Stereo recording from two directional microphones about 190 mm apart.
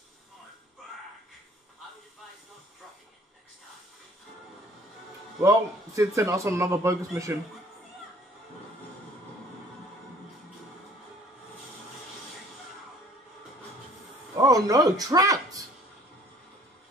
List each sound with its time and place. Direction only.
5.4 s a man's voice: 15° right (ahead or behind)
14.3 s a man's voice: 20° right (ahead or behind)